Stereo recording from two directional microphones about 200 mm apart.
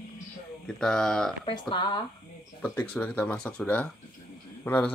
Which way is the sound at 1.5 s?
25° left (ahead or behind).